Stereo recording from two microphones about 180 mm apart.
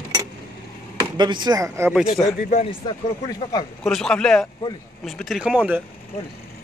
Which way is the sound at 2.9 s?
20° left (ahead or behind).